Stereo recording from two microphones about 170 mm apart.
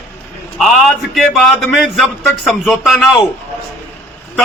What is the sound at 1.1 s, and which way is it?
Speech, centre (ahead or behind).